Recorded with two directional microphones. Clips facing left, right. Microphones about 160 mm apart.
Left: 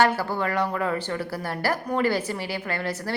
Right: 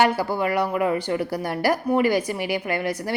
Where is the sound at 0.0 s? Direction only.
10° right (ahead or behind).